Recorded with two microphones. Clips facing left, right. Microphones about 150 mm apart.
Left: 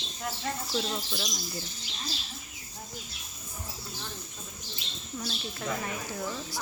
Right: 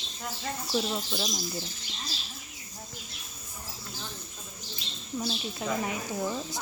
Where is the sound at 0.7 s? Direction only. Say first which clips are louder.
Right 6 dB; 10° right (ahead or behind).